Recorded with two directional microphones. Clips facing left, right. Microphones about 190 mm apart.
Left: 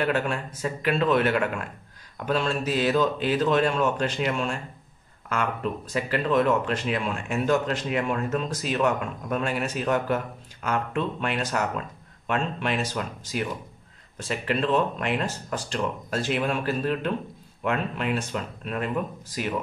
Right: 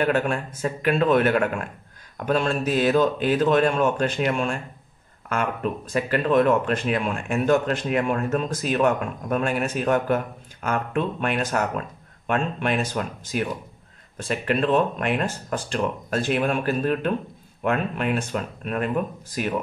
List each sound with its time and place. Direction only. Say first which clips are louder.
0.0 s speech: right 3 dB; 50° right (ahead or behind)